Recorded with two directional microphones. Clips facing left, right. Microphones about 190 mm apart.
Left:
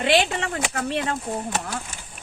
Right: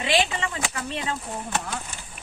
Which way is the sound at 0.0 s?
60° left (ahead or behind).